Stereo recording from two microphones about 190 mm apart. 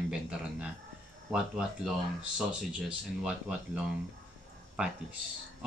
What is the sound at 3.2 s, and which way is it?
Speech, 5° right (ahead or behind).